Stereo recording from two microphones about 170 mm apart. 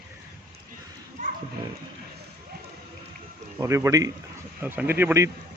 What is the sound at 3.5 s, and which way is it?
Speech, 15° right (ahead or behind).